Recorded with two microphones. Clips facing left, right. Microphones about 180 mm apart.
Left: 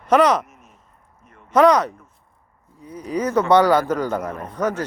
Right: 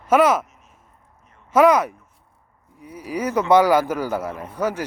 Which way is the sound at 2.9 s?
10° right (ahead or behind).